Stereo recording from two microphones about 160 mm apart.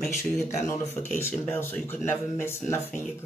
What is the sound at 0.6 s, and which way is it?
Speech, 20° left (ahead or behind).